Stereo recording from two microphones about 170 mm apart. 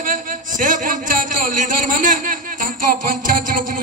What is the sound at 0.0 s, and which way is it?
A man's voice, 50° right (ahead or behind).